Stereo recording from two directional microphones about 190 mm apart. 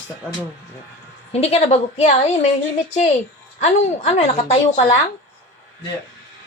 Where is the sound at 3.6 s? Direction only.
35° left (ahead or behind).